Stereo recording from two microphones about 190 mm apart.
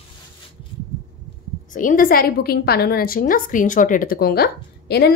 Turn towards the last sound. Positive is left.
turn(degrees=55)  # may be behind; listen again after turning